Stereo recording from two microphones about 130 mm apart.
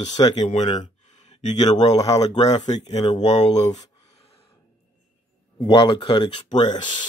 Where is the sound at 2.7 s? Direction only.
50° left (ahead or behind).